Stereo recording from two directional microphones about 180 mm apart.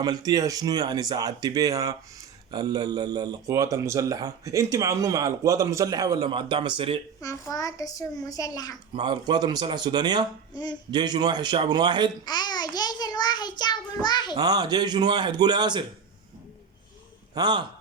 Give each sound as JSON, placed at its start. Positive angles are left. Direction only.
{"t": 0.0, "sound": "speech", "side_deg": -20}
{"t": 7.2, "sound": "child singing", "side_deg": 20}
{"t": 8.9, "sound": "speech", "side_deg": -25}
{"t": 10.5, "sound": "child singing", "side_deg": 25}
{"t": 10.9, "sound": "speech", "side_deg": -25}
{"t": 12.2, "sound": "child singing", "side_deg": 25}
{"t": 14.3, "sound": "speech", "side_deg": -20}
{"t": 17.3, "sound": "speech", "side_deg": -25}